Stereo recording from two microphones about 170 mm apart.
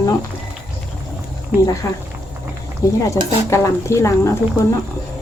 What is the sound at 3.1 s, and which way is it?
Speech, 15° left (ahead or behind).